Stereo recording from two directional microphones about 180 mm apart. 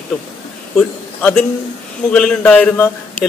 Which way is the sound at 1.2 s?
5° left (ahead or behind).